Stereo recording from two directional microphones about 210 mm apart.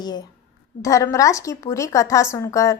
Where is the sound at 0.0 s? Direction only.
20° left (ahead or behind).